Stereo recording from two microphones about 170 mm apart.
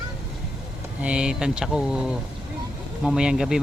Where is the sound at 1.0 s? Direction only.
5° right (ahead or behind).